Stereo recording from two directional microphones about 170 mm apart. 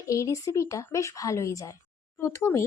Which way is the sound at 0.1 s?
20° left (ahead or behind).